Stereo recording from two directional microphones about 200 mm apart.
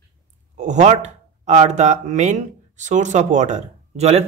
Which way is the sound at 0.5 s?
35° right (ahead or behind).